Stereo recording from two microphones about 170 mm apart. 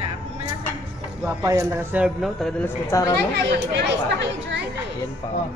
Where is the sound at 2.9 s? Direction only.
20° left (ahead or behind).